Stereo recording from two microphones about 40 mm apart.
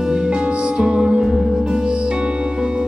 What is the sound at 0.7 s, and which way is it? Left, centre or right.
Music, centre.